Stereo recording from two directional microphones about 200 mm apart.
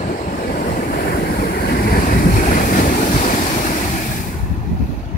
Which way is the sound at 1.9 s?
40° left (ahead or behind).